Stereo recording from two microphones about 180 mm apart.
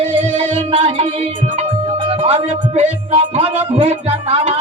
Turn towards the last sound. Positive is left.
turn(degrees=-35)  # may be behind; listen again after turning